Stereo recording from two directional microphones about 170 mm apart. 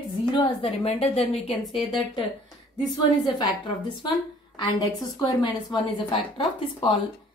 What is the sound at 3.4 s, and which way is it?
Speech, 30° left (ahead or behind).